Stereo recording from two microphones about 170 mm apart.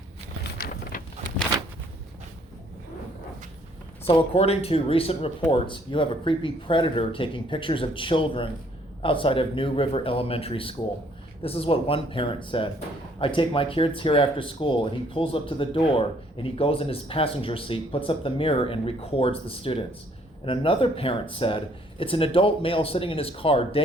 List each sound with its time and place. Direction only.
4.0 s speech: 35° left (ahead or behind)